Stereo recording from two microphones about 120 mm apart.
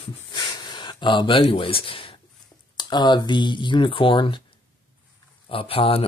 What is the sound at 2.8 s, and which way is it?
Speech, 35° left (ahead or behind).